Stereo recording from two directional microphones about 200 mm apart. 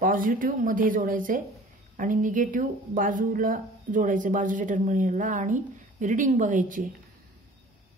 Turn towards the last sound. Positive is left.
turn(degrees=-40)  # may be behind; listen again after turning